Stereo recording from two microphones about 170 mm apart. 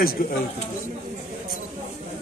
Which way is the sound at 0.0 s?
60° left (ahead or behind).